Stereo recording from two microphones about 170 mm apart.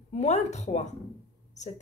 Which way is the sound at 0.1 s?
40° left (ahead or behind).